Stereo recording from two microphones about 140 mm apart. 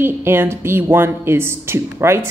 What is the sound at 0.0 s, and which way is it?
A woman's voice, 15° right (ahead or behind).